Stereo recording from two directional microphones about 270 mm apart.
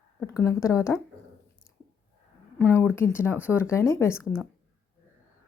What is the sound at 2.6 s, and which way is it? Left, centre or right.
A woman's voice, centre.